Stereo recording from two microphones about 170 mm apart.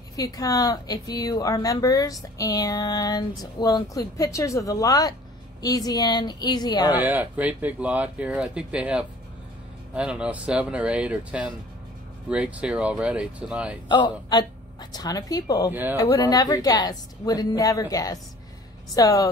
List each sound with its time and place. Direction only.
0.1 s speech: 20° left (ahead or behind)
7.1 s speech: 10° right (ahead or behind)
13.8 s speech: 25° left (ahead or behind)
15.7 s speech: 10° right (ahead or behind)
16.0 s speech: 20° left (ahead or behind)